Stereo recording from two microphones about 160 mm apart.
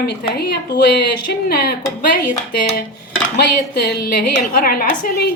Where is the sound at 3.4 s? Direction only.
90° left; by 4.8 s 65° left (ahead or behind).